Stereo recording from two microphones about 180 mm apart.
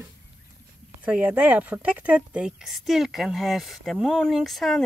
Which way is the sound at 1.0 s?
5° right (ahead or behind).